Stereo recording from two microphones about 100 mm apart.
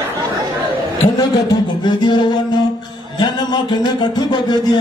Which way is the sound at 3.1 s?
45° left (ahead or behind).